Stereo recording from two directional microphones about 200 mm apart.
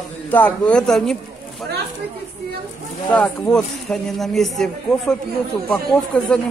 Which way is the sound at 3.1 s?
5° left (ahead or behind).